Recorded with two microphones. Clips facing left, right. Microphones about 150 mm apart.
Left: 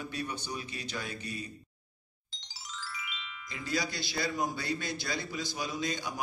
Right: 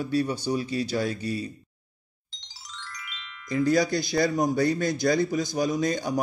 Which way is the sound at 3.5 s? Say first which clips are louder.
Right 13 dB; 45° right (ahead or behind).